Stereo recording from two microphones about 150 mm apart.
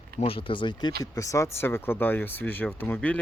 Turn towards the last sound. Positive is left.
turn(degrees=10)  # may be behind; listen again after turning